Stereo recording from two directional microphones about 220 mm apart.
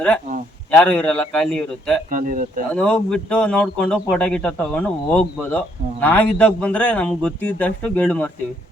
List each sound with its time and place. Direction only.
0.7 s speech: 5° left (ahead or behind)
2.0 s speech: 35° right (ahead or behind)
2.7 s speech: 5° left (ahead or behind)